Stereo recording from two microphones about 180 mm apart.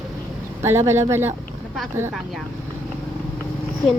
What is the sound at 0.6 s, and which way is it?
Speech, 15° right (ahead or behind).